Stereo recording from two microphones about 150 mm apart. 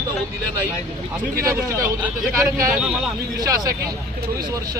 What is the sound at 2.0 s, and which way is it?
Speech, 20° right (ahead or behind).